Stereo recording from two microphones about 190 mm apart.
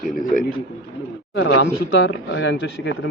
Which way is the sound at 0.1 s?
45° left (ahead or behind).